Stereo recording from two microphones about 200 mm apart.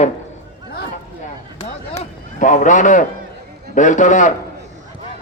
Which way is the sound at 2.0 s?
40° left (ahead or behind).